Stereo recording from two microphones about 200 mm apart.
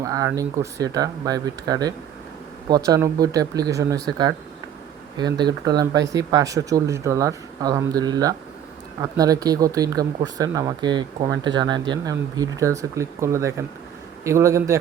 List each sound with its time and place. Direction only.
0.0 s speech: 15° right (ahead or behind)
5.1 s speech: 20° right (ahead or behind)